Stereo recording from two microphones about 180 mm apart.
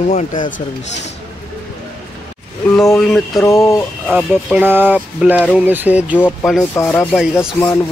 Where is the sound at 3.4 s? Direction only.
15° left (ahead or behind).